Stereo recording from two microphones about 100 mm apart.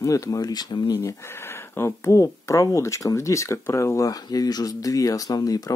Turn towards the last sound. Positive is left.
turn(degrees=40)  # may be behind; listen again after turning